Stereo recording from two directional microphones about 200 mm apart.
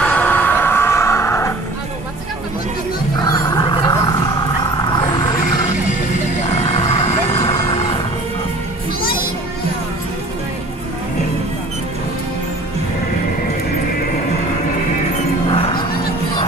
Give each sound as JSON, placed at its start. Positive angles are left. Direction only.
{"t": 0.0, "sound": "music", "side_deg": 10}
{"t": 3.3, "sound": "dog", "side_deg": 20}
{"t": 4.6, "sound": "vehicle", "side_deg": 20}
{"t": 6.6, "sound": "vehicle", "side_deg": 30}
{"t": 15.1, "sound": "music", "side_deg": 25}